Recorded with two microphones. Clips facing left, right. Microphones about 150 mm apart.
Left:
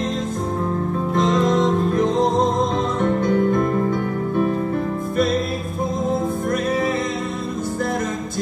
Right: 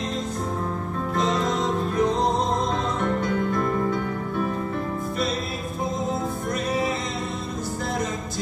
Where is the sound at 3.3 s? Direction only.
45° left (ahead or behind).